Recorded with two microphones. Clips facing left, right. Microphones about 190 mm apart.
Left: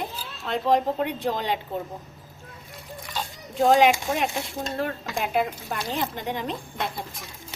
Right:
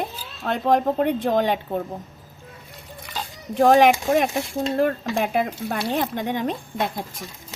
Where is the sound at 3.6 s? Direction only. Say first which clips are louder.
Right 3 dB; 50° right (ahead or behind).